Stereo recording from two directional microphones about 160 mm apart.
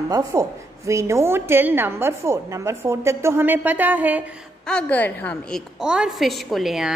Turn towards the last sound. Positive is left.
turn(degrees=0)  # may be behind; listen again after turning